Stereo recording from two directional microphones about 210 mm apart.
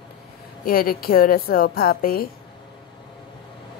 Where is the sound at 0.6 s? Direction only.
45° left (ahead or behind).